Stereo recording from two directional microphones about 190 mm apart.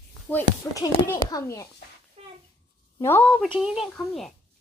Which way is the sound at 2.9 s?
10° left (ahead or behind).